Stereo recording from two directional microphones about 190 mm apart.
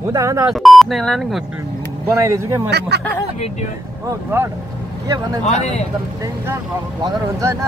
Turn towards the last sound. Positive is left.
turn(degrees=-15)  # may be behind; listen again after turning